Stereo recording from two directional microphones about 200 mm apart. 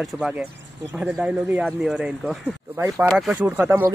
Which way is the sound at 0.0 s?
5° right (ahead or behind).